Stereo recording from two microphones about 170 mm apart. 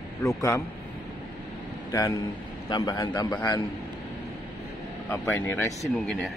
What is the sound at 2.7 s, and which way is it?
Speech, 25° left (ahead or behind).